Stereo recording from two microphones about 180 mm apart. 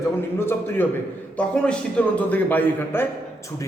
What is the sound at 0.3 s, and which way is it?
A man's voice, 15° left (ahead or behind).